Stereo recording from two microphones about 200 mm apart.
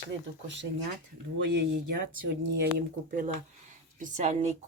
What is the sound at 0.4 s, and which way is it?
Speech, 60° right (ahead or behind).